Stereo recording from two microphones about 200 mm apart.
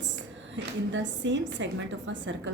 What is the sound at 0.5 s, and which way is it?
A woman's voice, 65° right (ahead or behind).